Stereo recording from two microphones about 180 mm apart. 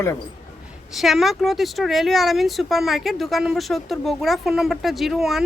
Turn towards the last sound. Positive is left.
turn(degrees=0)  # may be behind; listen again after turning